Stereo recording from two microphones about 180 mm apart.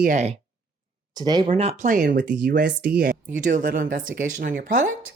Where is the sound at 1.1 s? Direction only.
25° right (ahead or behind).